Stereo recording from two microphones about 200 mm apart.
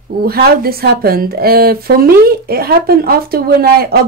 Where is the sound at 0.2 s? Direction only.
50° right (ahead or behind).